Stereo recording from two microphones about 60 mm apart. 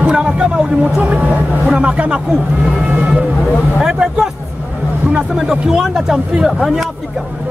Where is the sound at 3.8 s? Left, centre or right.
Centre.